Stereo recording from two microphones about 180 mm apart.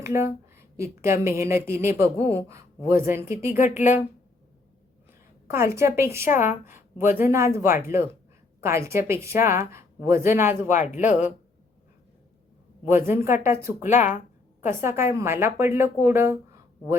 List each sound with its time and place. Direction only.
0.0 s a woman's voice: 15° right (ahead or behind)
3.6 s speech: 45° left (ahead or behind)
5.5 s a woman's voice: 15° right (ahead or behind)
6.3 s speech: 45° left (ahead or behind)
7.2 s a woman's voice: 15° right (ahead or behind)
10.7 s speech: 40° left (ahead or behind)
13.1 s a woman's voice: 15° right (ahead or behind)
13.8 s speech: 40° left (ahead or behind)
14.7 s a woman's voice: 15° right (ahead or behind)